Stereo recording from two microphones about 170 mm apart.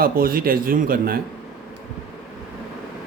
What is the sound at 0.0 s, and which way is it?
A man's voice, 55° right (ahead or behind).